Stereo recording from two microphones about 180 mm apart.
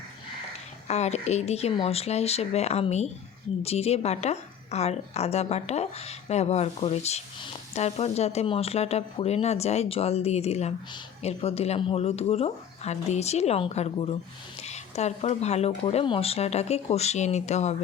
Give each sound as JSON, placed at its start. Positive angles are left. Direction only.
{"t": 0.9, "sound": "a woman's voice", "side_deg": 40}